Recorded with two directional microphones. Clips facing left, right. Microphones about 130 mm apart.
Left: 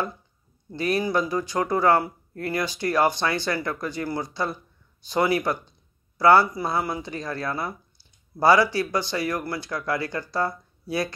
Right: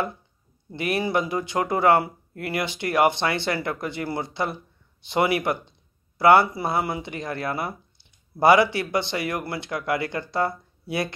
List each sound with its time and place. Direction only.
0.7 s speech: 25° right (ahead or behind)